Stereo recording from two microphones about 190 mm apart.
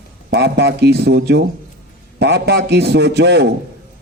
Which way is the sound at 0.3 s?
60° right (ahead or behind).